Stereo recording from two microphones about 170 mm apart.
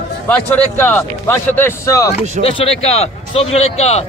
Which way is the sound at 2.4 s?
35° left (ahead or behind).